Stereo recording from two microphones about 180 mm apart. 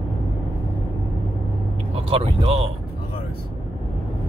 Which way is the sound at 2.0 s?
30° right (ahead or behind).